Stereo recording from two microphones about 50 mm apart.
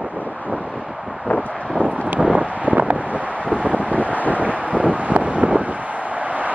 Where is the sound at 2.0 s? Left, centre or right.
Right.